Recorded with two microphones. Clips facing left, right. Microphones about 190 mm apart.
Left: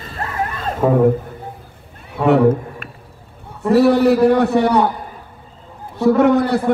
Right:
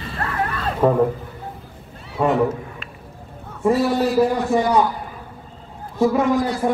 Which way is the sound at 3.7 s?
65° left (ahead or behind).